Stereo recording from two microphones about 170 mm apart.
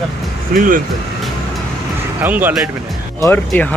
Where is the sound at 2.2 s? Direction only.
10° right (ahead or behind).